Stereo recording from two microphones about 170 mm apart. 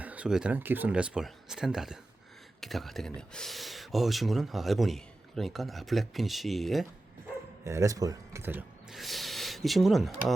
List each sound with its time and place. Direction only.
0.0 s speech: 10° right (ahead or behind)
7.6 s speech: 15° right (ahead or behind)
9.0 s speech: centre (ahead or behind)